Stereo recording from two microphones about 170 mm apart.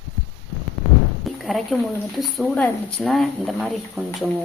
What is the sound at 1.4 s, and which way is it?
Speech, centre (ahead or behind).